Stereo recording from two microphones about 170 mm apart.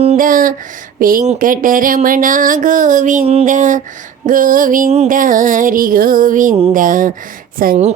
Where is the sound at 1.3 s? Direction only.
55° right (ahead or behind).